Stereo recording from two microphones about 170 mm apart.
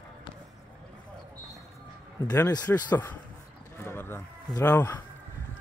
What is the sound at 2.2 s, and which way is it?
Speech, 15° left (ahead or behind).